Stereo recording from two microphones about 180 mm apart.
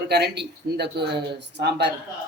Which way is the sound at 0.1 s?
65° right (ahead or behind).